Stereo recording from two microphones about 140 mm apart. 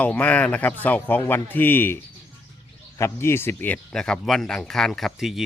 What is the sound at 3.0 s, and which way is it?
Speech, 15° left (ahead or behind).